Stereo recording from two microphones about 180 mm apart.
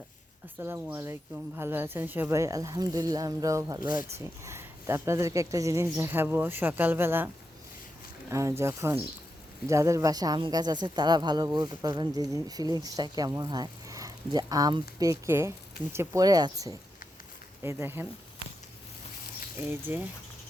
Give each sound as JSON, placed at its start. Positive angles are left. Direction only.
{"t": 0.6, "sound": "speech", "side_deg": -10}
{"t": 8.3, "sound": "speech", "side_deg": -15}
{"t": 19.9, "sound": "speech", "side_deg": -10}